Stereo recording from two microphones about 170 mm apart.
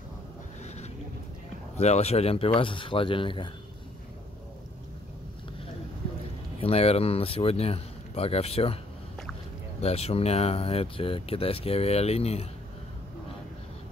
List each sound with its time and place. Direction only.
1.8 s speech: 40° left (ahead or behind)
6.6 s speech: 35° left (ahead or behind)
9.8 s speech: 35° left (ahead or behind)